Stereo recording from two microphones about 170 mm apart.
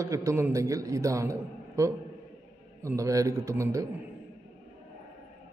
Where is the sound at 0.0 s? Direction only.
15° right (ahead or behind).